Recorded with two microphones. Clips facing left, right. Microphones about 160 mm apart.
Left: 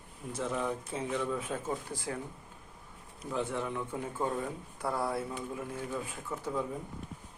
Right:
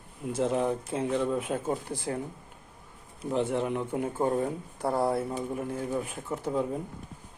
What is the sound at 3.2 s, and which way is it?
Speech, 25° right (ahead or behind).